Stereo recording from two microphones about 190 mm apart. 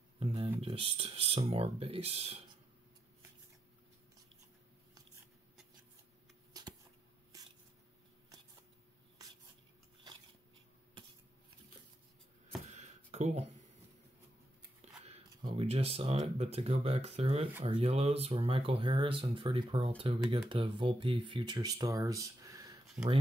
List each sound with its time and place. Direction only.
0.2 s a sound: 30° right (ahead or behind)
0.6 s speech: 30° right (ahead or behind)
6.5 s shuffling cards: 20° right (ahead or behind)
7.3 s squish: 20° right (ahead or behind)
12.6 s a sound: 35° right (ahead or behind)
15.2 s speech: 30° right (ahead or behind)